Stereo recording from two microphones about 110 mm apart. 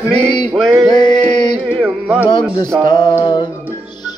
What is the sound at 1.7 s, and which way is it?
Music, 10° right (ahead or behind).